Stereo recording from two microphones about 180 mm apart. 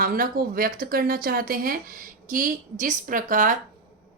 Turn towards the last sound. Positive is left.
turn(degrees=-45)  # may be behind; listen again after turning